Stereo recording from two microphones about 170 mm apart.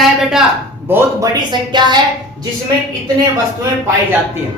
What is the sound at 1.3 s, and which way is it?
Speech, 25° right (ahead or behind).